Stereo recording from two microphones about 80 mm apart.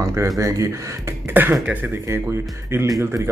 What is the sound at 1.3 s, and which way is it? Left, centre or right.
Speech, right.